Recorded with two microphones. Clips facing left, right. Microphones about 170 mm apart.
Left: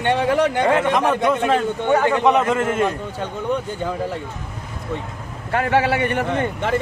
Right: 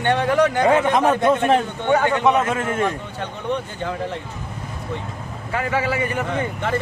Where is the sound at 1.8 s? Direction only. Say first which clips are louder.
Left 2 dB; 15° left (ahead or behind).